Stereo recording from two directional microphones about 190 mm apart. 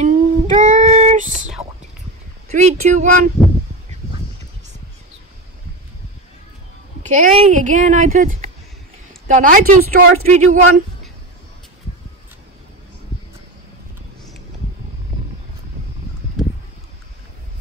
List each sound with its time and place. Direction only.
0.0 s child singing: 40° right (ahead or behind)
2.5 s speech: 40° right (ahead or behind)
7.0 s speech: 40° right (ahead or behind)